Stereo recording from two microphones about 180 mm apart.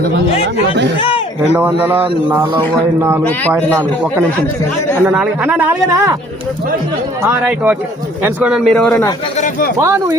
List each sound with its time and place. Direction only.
1.0 s a sound: 30° left (ahead or behind)
1.8 s speech: 10° right (ahead or behind)
7.2 s speech: 10° right (ahead or behind); by 9.0 s 5° left (ahead or behind)
9.8 s speech: 15° right (ahead or behind)